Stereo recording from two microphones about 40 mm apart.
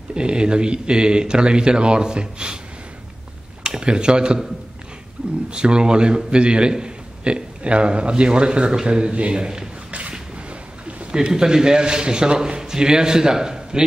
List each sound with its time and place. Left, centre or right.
0.1 s a man's voice: right
3.6 s speech: right
5.5 s a man's voice: right
11.1 s a man's voice: centre